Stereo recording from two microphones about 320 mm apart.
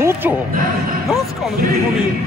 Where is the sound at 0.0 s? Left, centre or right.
Centre.